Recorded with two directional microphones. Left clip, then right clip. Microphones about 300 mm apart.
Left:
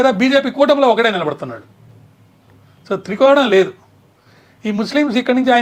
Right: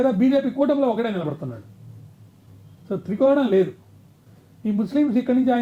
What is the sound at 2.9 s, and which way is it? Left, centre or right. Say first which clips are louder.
Speech: left 7 dB; centre.